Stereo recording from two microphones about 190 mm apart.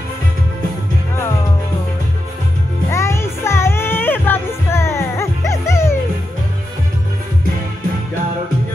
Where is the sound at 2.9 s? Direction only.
15° left (ahead or behind).